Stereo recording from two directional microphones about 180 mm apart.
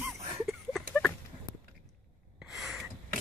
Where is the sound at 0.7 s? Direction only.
5° left (ahead or behind).